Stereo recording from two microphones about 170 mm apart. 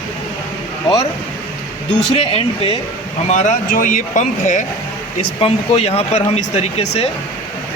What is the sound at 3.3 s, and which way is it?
Speech, 45° left (ahead or behind).